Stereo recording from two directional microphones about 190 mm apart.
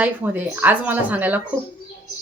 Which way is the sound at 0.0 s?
10° right (ahead or behind).